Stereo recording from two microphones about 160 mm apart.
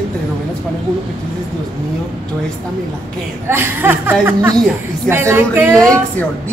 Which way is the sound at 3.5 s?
15° right (ahead or behind).